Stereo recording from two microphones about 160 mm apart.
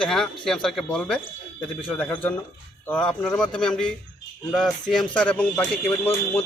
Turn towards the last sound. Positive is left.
turn(degrees=15)  # may be behind; listen again after turning